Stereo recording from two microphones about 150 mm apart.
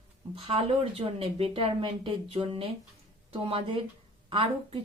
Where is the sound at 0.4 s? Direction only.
40° right (ahead or behind).